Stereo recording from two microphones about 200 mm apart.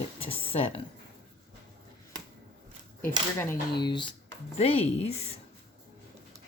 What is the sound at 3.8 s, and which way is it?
Speech, 20° left (ahead or behind).